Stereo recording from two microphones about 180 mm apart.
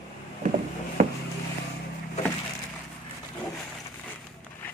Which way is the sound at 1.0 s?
45° right (ahead or behind).